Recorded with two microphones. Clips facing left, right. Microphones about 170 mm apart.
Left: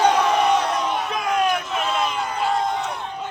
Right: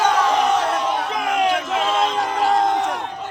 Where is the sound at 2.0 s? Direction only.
90° right.